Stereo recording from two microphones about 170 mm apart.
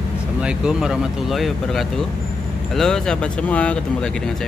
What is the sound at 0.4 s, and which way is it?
Speech, 5° right (ahead or behind).